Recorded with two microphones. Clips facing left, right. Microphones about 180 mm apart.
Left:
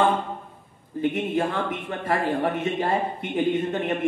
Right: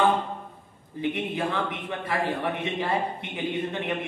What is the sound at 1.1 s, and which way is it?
A man's voice, 45° left (ahead or behind).